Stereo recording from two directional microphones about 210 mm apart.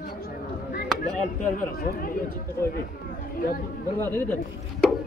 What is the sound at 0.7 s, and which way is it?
Speech, 45° left (ahead or behind).